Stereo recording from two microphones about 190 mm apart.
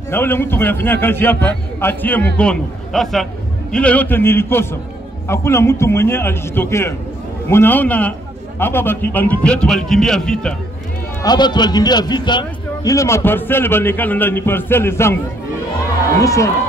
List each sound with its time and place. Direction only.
0.1 s a man's voice: 10° left (ahead or behind)
11.2 s a man's voice: 20° left (ahead or behind)
16.2 s a man's voice: 15° left (ahead or behind)